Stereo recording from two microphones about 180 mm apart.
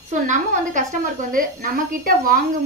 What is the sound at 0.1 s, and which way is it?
A woman's voice, 45° right (ahead or behind).